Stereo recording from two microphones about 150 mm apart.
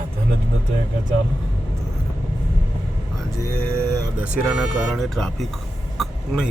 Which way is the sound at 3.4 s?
20° left (ahead or behind).